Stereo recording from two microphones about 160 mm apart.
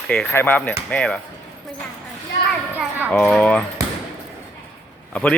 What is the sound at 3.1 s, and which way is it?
Speech, 5° left (ahead or behind).